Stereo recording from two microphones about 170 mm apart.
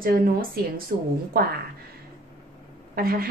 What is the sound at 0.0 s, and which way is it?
Speech, 55° right (ahead or behind).